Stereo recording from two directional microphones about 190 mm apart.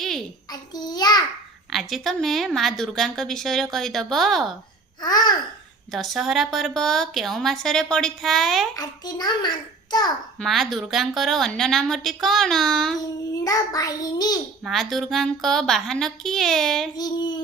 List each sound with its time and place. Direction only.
0.5 s child singing: 20° left (ahead or behind)
1.7 s a woman's voice: centre (ahead or behind)
5.0 s a child's voice: 20° left (ahead or behind)
5.9 s a woman's voice: centre (ahead or behind)
8.7 s a child's voice: 20° left (ahead or behind)
10.4 s a woman's voice: centre (ahead or behind)
13.4 s a child's voice: 20° left (ahead or behind)
14.6 s a woman's voice: centre (ahead or behind)
17.0 s a child's voice: 20° left (ahead or behind)